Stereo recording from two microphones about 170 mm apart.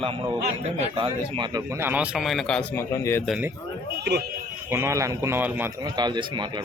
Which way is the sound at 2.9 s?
15° left (ahead or behind).